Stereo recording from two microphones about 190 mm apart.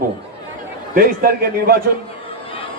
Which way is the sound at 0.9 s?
50° right (ahead or behind).